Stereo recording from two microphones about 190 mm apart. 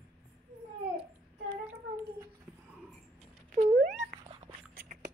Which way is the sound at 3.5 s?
45° right (ahead or behind).